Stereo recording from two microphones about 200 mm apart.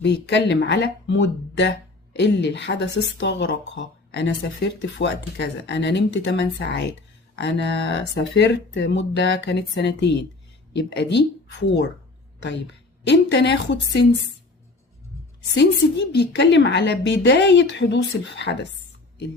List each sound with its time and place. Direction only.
0.0 s a woman's voice: 60° left (ahead or behind)
13.1 s a woman's voice: 60° left (ahead or behind)
15.5 s a woman's voice: 60° left (ahead or behind)